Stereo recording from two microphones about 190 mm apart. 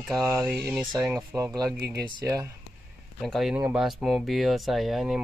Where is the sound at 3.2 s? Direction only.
Centre (ahead or behind).